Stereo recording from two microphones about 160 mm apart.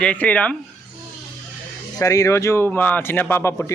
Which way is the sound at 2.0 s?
20° left (ahead or behind).